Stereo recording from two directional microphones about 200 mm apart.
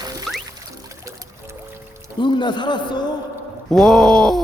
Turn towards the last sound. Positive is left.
turn(degrees=5)  # may be behind; listen again after turning